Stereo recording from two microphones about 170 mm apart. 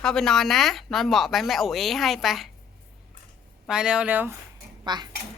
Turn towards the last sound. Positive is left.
turn(degrees=-25)  # may be behind; listen again after turning